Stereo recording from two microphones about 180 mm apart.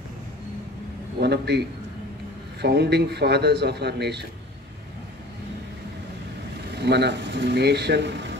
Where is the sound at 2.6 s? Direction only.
65° right (ahead or behind).